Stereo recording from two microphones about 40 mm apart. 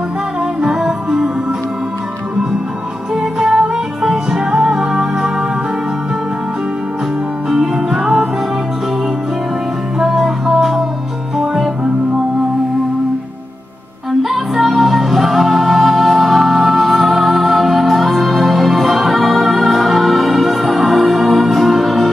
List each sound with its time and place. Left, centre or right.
0.6 s music: right
3.3 s music: centre
7.5 s music: centre
8.0 s music: right
10.1 s music: centre
14.3 s music: centre